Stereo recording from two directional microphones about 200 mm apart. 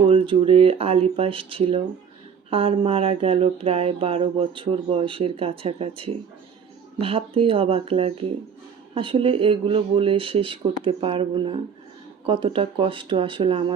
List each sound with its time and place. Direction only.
0.1 s speech: 25° right (ahead or behind)